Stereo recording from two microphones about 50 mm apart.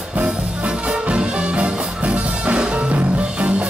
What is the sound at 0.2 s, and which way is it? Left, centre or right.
Music, right.